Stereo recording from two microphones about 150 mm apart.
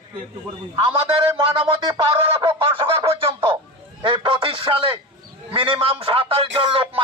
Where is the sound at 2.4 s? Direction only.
35° right (ahead or behind).